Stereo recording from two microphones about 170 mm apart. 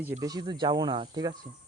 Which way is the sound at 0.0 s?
15° right (ahead or behind).